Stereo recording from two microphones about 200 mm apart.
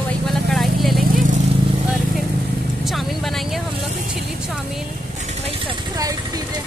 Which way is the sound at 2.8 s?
Centre (ahead or behind).